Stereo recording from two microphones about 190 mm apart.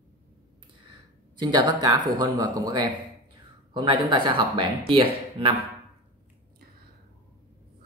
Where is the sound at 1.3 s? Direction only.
20° right (ahead or behind).